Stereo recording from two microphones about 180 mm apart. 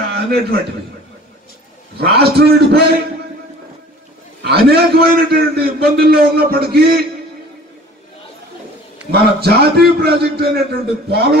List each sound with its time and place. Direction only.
0.1 s a man's voice: 60° right (ahead or behind)
2.0 s a man's voice: 65° right (ahead or behind)
4.4 s a man's voice: 65° right (ahead or behind)
9.1 s a man's voice: 65° right (ahead or behind)